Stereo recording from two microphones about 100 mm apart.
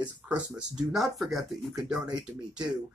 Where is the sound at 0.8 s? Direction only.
5° right (ahead or behind).